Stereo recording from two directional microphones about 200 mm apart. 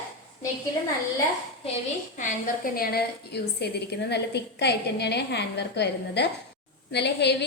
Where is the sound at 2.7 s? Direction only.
50° left (ahead or behind).